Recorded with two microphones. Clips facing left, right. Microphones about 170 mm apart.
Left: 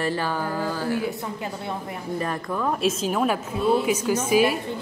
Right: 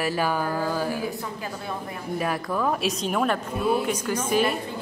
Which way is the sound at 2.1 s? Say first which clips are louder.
Right 1 dB; 10° right (ahead or behind).